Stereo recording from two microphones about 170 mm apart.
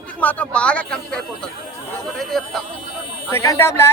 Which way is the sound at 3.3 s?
15° left (ahead or behind).